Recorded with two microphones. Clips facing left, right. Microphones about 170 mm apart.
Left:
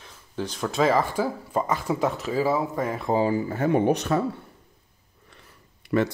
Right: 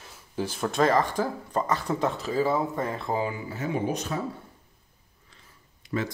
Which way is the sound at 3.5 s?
55° left (ahead or behind).